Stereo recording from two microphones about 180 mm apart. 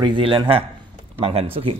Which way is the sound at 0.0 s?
25° right (ahead or behind).